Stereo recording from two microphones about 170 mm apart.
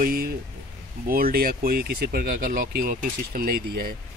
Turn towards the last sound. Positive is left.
turn(degrees=-60)  # may be behind; listen again after turning